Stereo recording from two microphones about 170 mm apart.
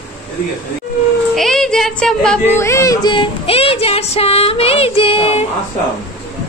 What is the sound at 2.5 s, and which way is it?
Child singing, 15° left (ahead or behind).